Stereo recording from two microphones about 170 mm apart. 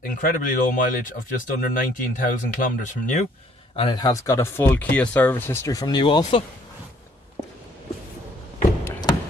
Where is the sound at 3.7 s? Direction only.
25° left (ahead or behind).